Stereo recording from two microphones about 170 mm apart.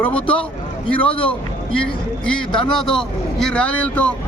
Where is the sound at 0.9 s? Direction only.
30° left (ahead or behind).